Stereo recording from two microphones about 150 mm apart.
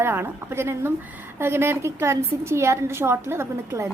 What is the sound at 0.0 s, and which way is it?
A woman's voice, 15° right (ahead or behind).